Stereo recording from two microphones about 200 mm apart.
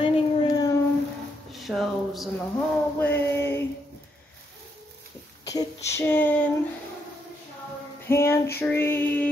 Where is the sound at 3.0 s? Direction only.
10° left (ahead or behind).